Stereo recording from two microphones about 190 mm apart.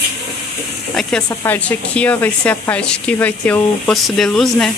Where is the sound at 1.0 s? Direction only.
Centre (ahead or behind).